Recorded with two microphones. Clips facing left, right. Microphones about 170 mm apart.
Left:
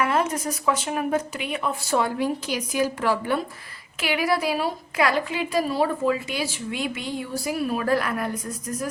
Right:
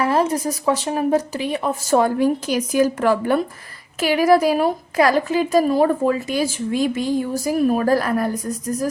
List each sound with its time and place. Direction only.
0.0 s a woman's voice: 35° right (ahead or behind)